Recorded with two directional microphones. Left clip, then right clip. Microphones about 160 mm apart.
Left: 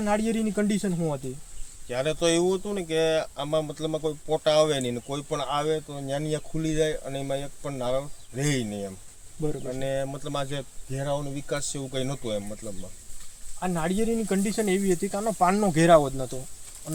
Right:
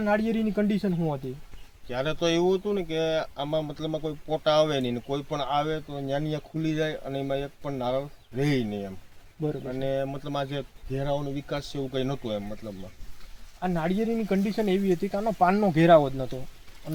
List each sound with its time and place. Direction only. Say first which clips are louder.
0.0 s speech: even; 10° right (ahead or behind)
1.9 s speech: left 2 dB; 20° left (ahead or behind)
13.6 s speech: even; 15° right (ahead or behind)